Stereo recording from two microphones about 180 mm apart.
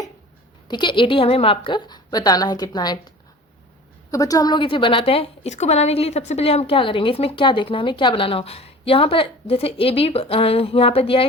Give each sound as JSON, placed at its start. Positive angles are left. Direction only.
{"t": 0.7, "sound": "a woman's voice", "side_deg": 25}
{"t": 4.1, "sound": "a woman's voice", "side_deg": 20}